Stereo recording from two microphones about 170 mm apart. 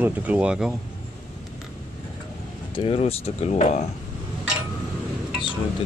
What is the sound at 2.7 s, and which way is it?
Speech, 35° left (ahead or behind).